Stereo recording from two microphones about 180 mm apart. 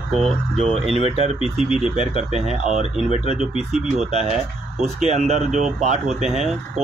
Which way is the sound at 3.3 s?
5° right (ahead or behind).